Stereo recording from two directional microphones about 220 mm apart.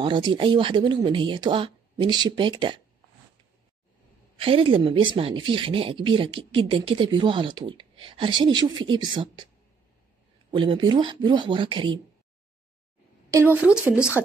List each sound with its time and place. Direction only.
0.0 s speech: 20° right (ahead or behind)
4.4 s speech: 25° right (ahead or behind)
10.5 s speech: 20° right (ahead or behind)
13.3 s speech: 10° right (ahead or behind)